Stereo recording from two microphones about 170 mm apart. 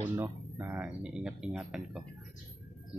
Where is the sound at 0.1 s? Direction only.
10° right (ahead or behind).